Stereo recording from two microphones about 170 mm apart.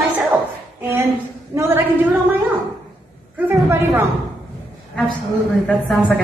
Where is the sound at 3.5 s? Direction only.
15° right (ahead or behind).